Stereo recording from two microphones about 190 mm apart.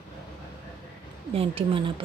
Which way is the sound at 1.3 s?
30° right (ahead or behind).